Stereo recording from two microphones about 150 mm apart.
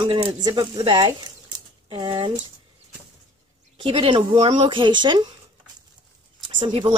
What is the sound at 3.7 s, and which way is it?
Speech, 35° right (ahead or behind).